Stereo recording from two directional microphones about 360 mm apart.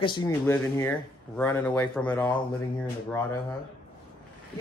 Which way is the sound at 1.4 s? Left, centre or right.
Centre.